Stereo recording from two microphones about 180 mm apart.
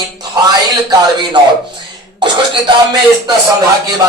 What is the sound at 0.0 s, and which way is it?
Speech, 20° right (ahead or behind).